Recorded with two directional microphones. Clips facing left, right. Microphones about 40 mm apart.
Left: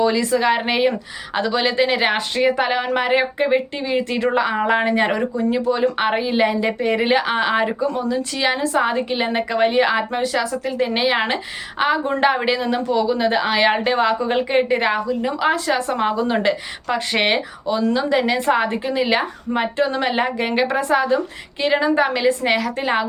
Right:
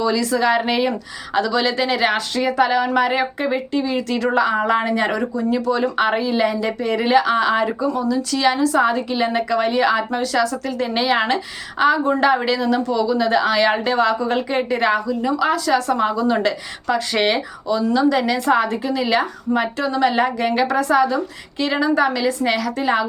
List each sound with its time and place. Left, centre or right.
0.0 s speech: left